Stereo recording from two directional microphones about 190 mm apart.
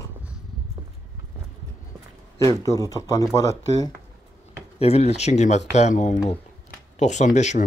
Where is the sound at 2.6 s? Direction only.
15° left (ahead or behind).